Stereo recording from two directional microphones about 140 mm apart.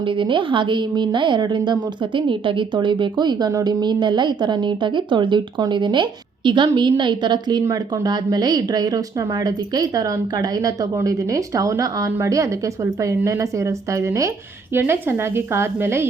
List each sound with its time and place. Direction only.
0.0 s a woman's voice: 35° right (ahead or behind); by 16.0 s 15° right (ahead or behind)